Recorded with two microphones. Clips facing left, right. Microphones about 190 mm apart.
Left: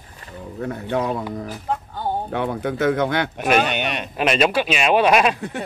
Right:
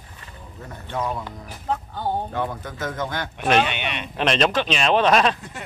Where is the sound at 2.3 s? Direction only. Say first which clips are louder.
Left 5 dB; 65° left (ahead or behind).